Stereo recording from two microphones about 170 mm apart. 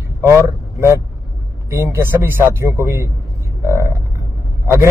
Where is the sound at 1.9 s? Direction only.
15° right (ahead or behind).